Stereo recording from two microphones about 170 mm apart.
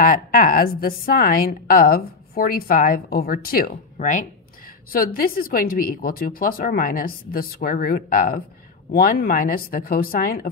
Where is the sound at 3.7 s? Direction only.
50° left (ahead or behind).